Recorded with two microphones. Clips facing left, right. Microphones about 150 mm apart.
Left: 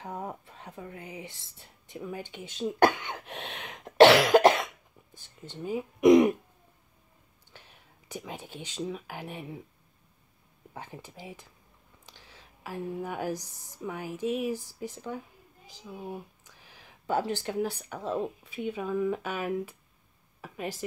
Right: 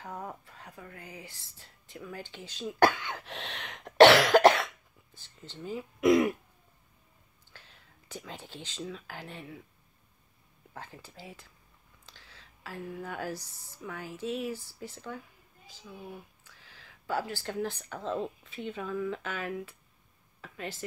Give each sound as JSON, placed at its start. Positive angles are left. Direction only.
{"t": 0.0, "sound": "speech", "side_deg": 20}
{"t": 3.4, "sound": "cough", "side_deg": 10}
{"t": 5.1, "sound": "speech", "side_deg": 15}
{"t": 7.5, "sound": "speech", "side_deg": 15}
{"t": 10.7, "sound": "a woman's voice", "side_deg": 15}